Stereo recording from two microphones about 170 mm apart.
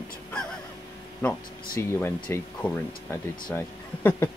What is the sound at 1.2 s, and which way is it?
Speech, 10° left (ahead or behind).